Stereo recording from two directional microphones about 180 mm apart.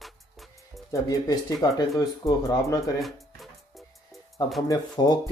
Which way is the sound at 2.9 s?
Centre (ahead or behind).